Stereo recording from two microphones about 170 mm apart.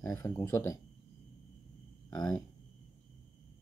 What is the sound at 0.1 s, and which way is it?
Speech, 20° left (ahead or behind).